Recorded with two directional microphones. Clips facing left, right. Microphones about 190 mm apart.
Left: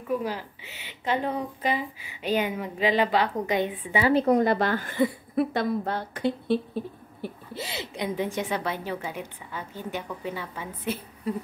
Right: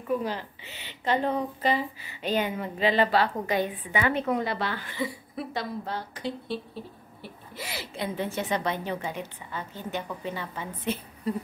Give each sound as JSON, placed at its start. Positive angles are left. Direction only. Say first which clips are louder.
{"t": 0.1, "sound": "a woman's voice", "louder": "even", "side_deg": 10}
{"t": 7.5, "sound": "a woman's voice", "louder": "right 1 dB", "side_deg": 25}